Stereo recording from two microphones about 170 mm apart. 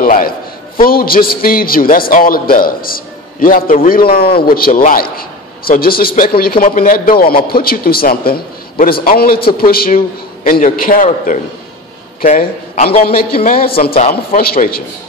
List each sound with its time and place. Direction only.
0.0 s a sound: 60° left (ahead or behind)
0.7 s a man's voice: 60° left (ahead or behind)
13.8 s a man's voice: 35° left (ahead or behind)
14.3 s a man's voice: 60° left (ahead or behind)